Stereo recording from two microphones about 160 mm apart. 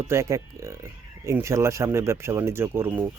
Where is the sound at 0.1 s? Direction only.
15° right (ahead or behind).